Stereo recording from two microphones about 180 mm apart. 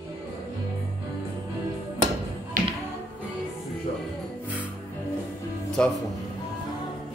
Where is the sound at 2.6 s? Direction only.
45° right (ahead or behind).